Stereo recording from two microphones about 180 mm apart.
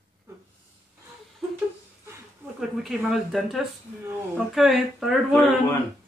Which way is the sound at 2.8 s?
Centre (ahead or behind).